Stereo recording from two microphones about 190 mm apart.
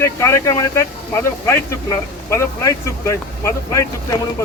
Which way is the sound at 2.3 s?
15° left (ahead or behind).